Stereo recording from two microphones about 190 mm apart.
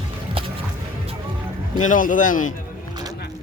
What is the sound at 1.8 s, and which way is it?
Speech, 45° left (ahead or behind).